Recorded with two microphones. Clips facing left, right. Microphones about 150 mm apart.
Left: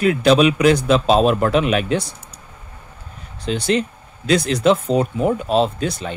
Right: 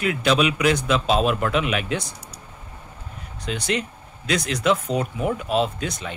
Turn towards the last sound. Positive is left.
turn(degrees=30)  # may be behind; listen again after turning